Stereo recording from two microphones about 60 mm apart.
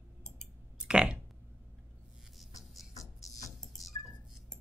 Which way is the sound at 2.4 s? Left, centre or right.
Centre.